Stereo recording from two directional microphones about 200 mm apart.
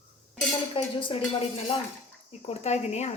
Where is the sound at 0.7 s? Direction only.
25° left (ahead or behind).